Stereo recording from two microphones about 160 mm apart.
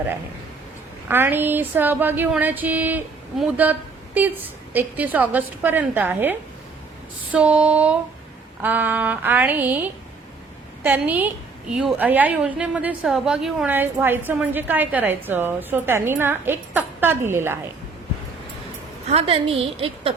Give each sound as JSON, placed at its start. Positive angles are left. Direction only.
{"t": 1.0, "sound": "a woman's voice", "side_deg": -15}
{"t": 7.3, "sound": "a woman's voice", "side_deg": -5}
{"t": 13.7, "sound": "a woman's voice", "side_deg": -15}
{"t": 19.1, "sound": "a woman's voice", "side_deg": -35}